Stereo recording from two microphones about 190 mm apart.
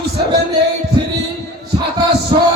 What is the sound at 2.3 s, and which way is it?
Music, 25° right (ahead or behind).